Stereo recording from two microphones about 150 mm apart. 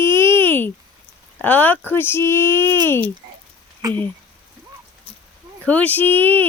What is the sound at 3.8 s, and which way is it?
Speech, 25° right (ahead or behind).